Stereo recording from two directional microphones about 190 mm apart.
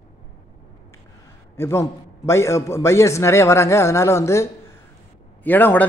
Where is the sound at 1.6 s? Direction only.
15° left (ahead or behind).